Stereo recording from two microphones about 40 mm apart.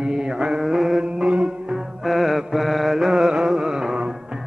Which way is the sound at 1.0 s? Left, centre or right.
Right.